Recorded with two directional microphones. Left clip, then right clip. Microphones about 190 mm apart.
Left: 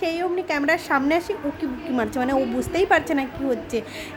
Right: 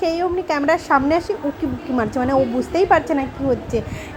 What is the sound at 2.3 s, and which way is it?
Speech, 5° right (ahead or behind).